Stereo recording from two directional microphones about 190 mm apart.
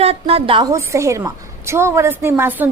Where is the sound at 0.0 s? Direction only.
30° right (ahead or behind).